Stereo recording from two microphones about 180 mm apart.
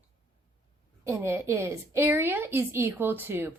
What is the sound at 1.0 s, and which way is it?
A woman's voice, 15° right (ahead or behind).